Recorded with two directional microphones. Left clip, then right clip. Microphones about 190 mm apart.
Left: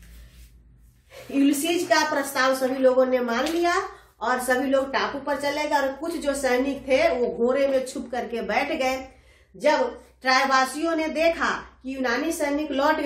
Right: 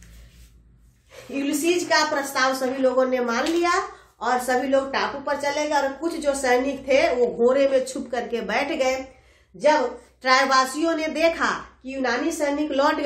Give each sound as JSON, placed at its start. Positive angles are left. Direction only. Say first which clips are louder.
{"t": 1.9, "sound": "a woman's voice", "louder": "right 1 dB", "side_deg": -15}
{"t": 10.2, "sound": "a woman's voice", "louder": "right 2 dB", "side_deg": -25}